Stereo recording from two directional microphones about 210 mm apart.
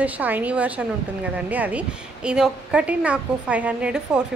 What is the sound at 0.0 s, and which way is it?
A woman's voice, 10° right (ahead or behind).